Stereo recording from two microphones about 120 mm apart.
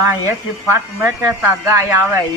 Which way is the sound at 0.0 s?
25° right (ahead or behind).